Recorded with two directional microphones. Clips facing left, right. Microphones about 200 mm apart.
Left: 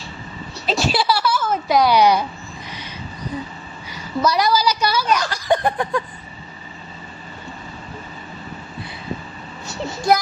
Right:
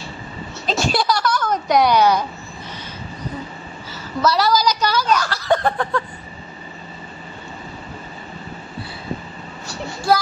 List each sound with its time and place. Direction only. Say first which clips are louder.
0.7 s a sound: even; 5° left (ahead or behind)
3.9 s a woman's voice: even; 15° left (ahead or behind)
10.1 s a child's voice: left 1 dB; 20° left (ahead or behind)